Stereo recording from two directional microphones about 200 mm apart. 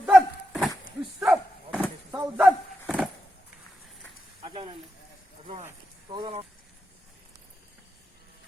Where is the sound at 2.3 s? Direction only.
5° right (ahead or behind).